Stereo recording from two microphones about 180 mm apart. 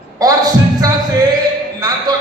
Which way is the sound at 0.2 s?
20° right (ahead or behind).